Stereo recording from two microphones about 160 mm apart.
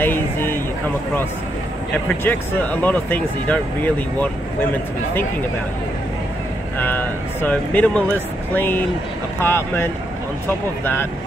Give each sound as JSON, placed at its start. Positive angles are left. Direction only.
{"t": 0.0, "sound": "a sound", "side_deg": 15}
{"t": 2.0, "sound": "speech", "side_deg": 10}
{"t": 6.8, "sound": "speech", "side_deg": 10}